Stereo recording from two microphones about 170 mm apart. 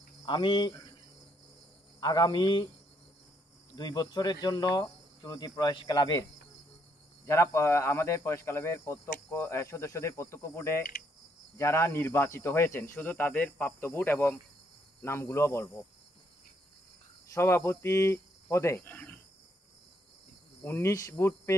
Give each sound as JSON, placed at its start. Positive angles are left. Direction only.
{"t": 0.2, "sound": "speech", "side_deg": 30}
{"t": 2.0, "sound": "cricket", "side_deg": 25}
{"t": 3.7, "sound": "cricket", "side_deg": 25}
{"t": 7.2, "sound": "speech", "side_deg": 15}
{"t": 17.3, "sound": "speech", "side_deg": 15}
{"t": 20.6, "sound": "speech", "side_deg": 15}